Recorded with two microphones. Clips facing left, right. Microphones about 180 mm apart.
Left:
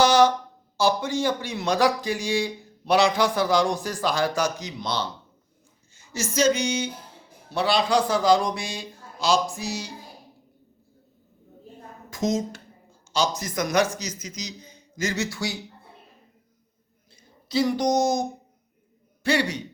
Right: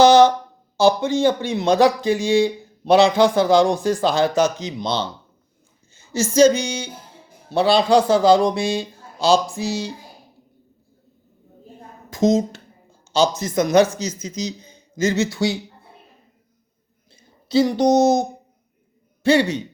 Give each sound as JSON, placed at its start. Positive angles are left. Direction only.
{"t": 0.0, "sound": "a sound", "side_deg": -25}
{"t": 0.8, "sound": "a man's voice", "side_deg": -25}
{"t": 12.1, "sound": "a man's voice", "side_deg": -25}
{"t": 17.5, "sound": "a man's voice", "side_deg": -25}